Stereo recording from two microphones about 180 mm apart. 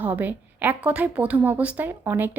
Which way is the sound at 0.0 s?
10° right (ahead or behind).